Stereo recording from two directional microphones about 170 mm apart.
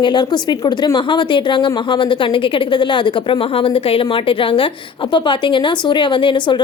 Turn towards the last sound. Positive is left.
turn(degrees=30)  # may be behind; listen again after turning